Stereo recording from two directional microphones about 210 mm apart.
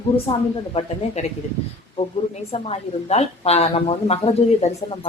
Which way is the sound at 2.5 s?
30° left (ahead or behind).